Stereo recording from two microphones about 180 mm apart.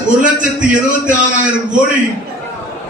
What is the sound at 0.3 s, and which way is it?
A man's voice, 45° right (ahead or behind).